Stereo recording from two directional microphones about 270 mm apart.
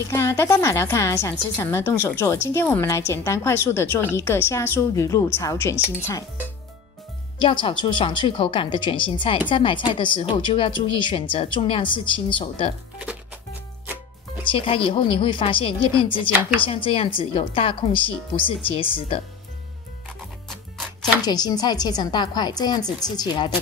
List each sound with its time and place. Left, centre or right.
0.1 s a woman's voice: centre
7.3 s a woman's voice: centre
14.4 s a woman's voice: centre
20.4 s music: centre
21.2 s a woman's voice: centre